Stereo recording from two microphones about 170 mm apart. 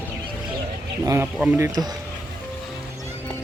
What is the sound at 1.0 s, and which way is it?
Speech, 15° right (ahead or behind).